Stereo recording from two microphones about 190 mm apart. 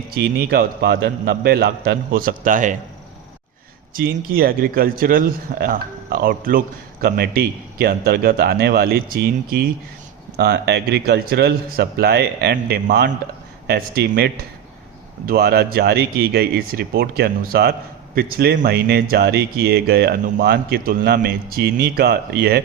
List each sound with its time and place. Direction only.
0.1 s speech: 55° right (ahead or behind)
3.9 s a man's voice: 50° right (ahead or behind)
15.3 s speech: 55° right (ahead or behind)